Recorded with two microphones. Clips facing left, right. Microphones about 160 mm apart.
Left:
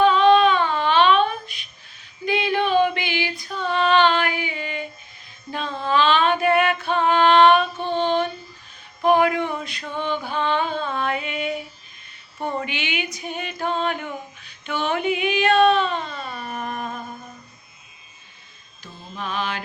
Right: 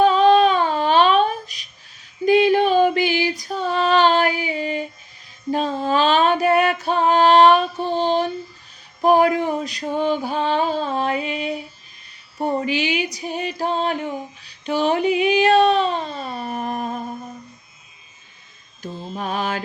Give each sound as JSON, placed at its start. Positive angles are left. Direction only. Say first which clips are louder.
{"t": 0.0, "sound": "humming", "louder": "right 1 dB", "side_deg": -40}
{"t": 2.2, "sound": "female singing", "louder": "right 7 dB", "side_deg": -45}
{"t": 5.5, "sound": "music", "louder": "right 5 dB", "side_deg": -40}
{"t": 9.0, "sound": "a sound", "louder": "right 2 dB", "side_deg": -40}
{"t": 18.8, "sound": "mantra", "louder": "right 6 dB", "side_deg": -40}